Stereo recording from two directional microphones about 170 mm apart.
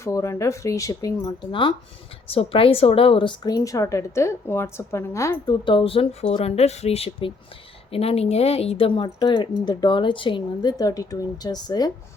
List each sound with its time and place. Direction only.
0.0 s speech: 15° left (ahead or behind)
5.6 s speech: 30° left (ahead or behind)